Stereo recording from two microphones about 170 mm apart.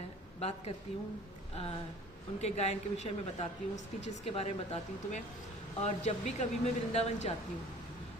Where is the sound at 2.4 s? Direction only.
40° left (ahead or behind).